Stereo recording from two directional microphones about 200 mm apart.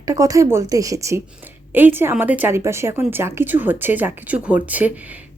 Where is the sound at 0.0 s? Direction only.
15° right (ahead or behind).